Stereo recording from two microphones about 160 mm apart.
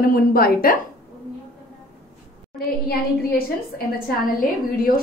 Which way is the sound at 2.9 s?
70° left (ahead or behind).